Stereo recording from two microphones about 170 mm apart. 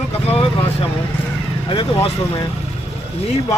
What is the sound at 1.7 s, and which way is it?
Speech, 30° left (ahead or behind).